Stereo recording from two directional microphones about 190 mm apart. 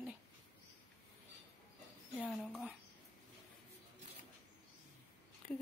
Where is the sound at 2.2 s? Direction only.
Centre (ahead or behind).